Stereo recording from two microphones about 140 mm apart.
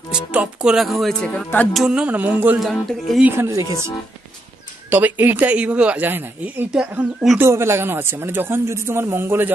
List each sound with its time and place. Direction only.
0.1 s speech: 10° right (ahead or behind); by 1.7 s 10° left (ahead or behind)
1.7 s speech: 5° right (ahead or behind)
2.6 s speech: centre (ahead or behind)
3.3 s speech: 20° right (ahead or behind)
4.8 s speech: 15° right (ahead or behind)
7.4 s speech: 20° right (ahead or behind)